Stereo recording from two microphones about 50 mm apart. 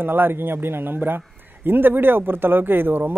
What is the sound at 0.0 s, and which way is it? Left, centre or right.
A man's voice, right.